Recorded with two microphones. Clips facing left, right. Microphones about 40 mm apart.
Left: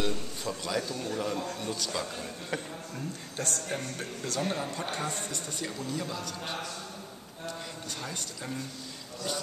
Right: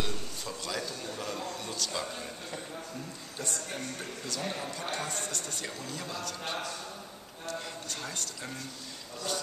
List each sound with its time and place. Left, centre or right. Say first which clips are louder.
0.0 s a man's voice: left 4 dB; centre
3.4 s speech: left 3 dB; left
4.4 s speech: left 5 dB; left
5.5 s speech: left 3 dB; centre
7.4 s speech: right 1 dB; centre